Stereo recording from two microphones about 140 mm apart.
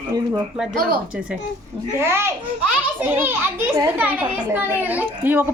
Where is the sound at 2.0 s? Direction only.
15° right (ahead or behind).